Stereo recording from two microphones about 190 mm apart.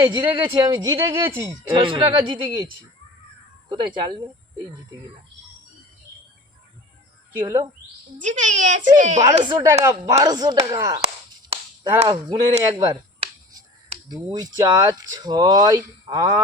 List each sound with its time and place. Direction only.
0.2 s speech: 20° right (ahead or behind)
1.9 s speech: 25° right (ahead or behind)
3.7 s speech: 25° right (ahead or behind)
7.4 s a woman's voice: 30° right (ahead or behind)
9.4 s speech: 20° right (ahead or behind)
10.7 s chop: 20° right (ahead or behind)
12.0 s finger snapping: 25° right (ahead or behind)
14.1 s speech: 20° right (ahead or behind)